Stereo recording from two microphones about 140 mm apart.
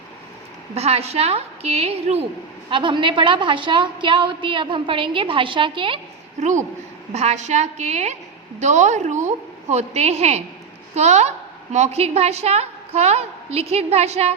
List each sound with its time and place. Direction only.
0.7 s a woman's voice: 50° right (ahead or behind)
2.6 s a woman's voice: 35° right (ahead or behind)
7.1 s a woman's voice: 50° right (ahead or behind)